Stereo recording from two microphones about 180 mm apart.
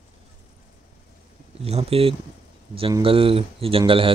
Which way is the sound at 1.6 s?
35° right (ahead or behind).